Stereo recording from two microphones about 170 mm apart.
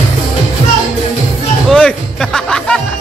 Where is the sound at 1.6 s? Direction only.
5° left (ahead or behind).